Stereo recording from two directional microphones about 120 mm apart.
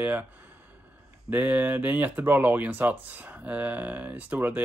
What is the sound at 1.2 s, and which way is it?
Speech, 15° right (ahead or behind).